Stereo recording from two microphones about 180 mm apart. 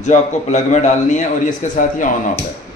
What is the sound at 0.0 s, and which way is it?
A man's voice, 40° left (ahead or behind).